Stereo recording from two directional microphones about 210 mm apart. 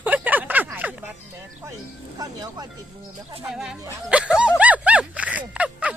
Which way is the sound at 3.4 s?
5° right (ahead or behind).